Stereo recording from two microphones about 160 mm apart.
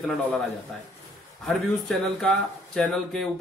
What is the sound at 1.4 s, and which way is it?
Speech, centre (ahead or behind).